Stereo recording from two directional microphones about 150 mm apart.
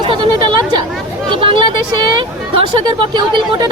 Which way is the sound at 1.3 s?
35° right (ahead or behind).